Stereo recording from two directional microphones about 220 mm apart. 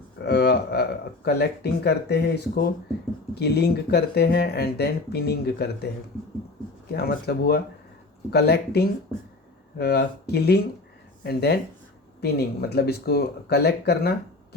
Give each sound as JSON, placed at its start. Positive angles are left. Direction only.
{"t": 0.3, "sound": "speech", "side_deg": 50}